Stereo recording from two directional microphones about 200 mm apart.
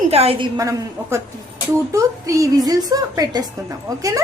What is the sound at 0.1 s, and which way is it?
A woman's voice, 30° right (ahead or behind).